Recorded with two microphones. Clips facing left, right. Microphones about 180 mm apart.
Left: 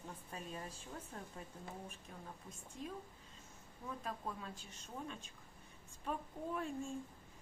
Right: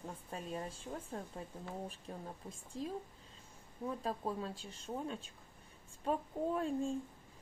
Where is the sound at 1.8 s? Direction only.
35° right (ahead or behind).